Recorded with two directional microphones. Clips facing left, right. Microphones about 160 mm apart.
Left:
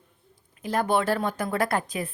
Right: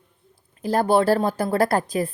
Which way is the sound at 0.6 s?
35° right (ahead or behind).